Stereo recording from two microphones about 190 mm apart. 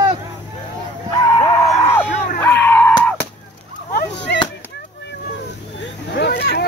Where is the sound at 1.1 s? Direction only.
20° left (ahead or behind).